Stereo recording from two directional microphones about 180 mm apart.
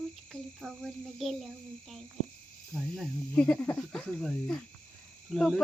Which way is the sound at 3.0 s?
5° left (ahead or behind).